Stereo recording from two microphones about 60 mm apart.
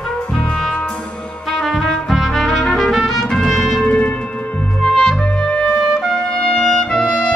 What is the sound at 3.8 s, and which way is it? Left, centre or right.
Music, left.